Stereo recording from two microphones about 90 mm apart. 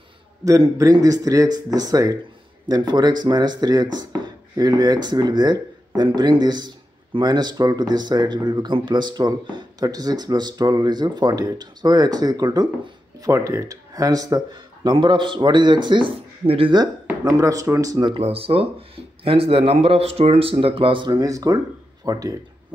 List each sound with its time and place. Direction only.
0.5 s speech: 40° right (ahead or behind); by 16.7 s 90° right
17.2 s speech: 40° right (ahead or behind)
18.0 s speech: 80° right; by 21.2 s 65° right (ahead or behind)
21.2 s speech: 40° right (ahead or behind)